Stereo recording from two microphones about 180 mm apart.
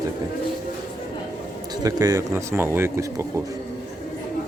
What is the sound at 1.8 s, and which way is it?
Speech, 20° right (ahead or behind).